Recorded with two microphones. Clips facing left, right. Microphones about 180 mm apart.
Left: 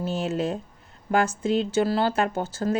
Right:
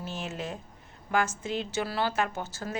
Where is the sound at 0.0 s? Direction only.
35° left (ahead or behind).